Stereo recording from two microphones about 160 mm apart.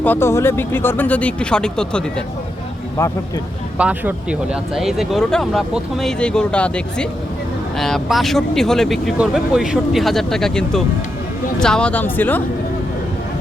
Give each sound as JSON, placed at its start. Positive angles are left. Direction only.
{"t": 0.0, "sound": "speech", "side_deg": 15}
{"t": 3.0, "sound": "speech", "side_deg": 15}
{"t": 3.8, "sound": "speech", "side_deg": -10}